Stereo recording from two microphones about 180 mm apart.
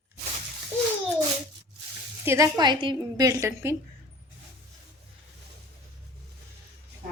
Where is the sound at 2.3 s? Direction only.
20° right (ahead or behind).